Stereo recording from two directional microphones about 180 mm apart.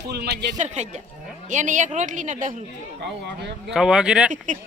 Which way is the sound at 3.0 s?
70° right (ahead or behind).